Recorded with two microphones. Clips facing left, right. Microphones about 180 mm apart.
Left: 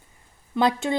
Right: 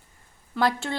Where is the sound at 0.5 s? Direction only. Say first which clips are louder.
Left 3 dB; 20° left (ahead or behind).